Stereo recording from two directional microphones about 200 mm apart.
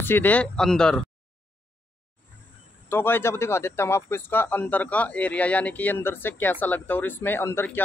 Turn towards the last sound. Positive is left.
turn(degrees=10)  # may be behind; listen again after turning